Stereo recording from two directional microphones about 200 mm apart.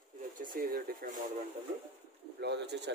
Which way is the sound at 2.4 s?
60° right (ahead or behind).